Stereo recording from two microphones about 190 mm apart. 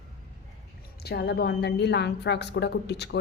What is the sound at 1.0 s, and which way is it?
A woman's voice, 60° left (ahead or behind).